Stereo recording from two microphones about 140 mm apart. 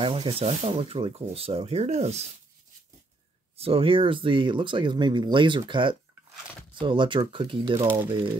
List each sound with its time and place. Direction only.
0.0 s speech: 40° right (ahead or behind)
3.5 s speech: 45° right (ahead or behind)